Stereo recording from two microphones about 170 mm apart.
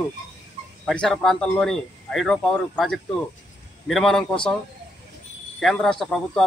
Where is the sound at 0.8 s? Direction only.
5° left (ahead or behind).